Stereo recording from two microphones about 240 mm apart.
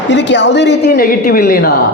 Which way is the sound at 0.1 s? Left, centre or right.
Left.